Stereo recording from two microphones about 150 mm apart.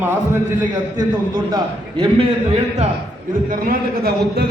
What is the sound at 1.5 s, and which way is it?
A man's voice, 30° right (ahead or behind).